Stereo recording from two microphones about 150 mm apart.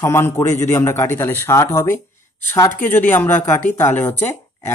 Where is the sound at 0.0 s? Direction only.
15° left (ahead or behind).